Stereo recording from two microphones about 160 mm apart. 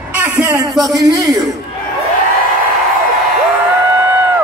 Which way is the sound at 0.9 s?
25° right (ahead or behind).